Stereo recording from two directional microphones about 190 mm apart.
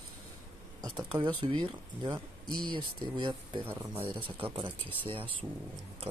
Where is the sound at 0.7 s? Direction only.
20° right (ahead or behind).